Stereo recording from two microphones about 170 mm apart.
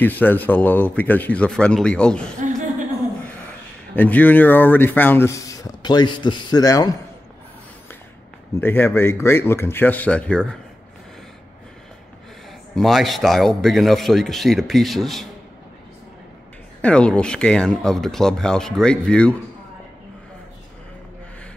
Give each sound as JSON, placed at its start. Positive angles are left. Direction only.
{"t": 0.0, "sound": "speech", "side_deg": 10}
{"t": 3.9, "sound": "speech", "side_deg": 10}
{"t": 8.5, "sound": "speech", "side_deg": 10}
{"t": 12.7, "sound": "speech", "side_deg": 0}
{"t": 16.8, "sound": "speech", "side_deg": 5}